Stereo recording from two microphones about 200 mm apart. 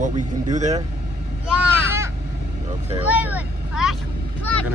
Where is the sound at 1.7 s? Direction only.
10° right (ahead or behind).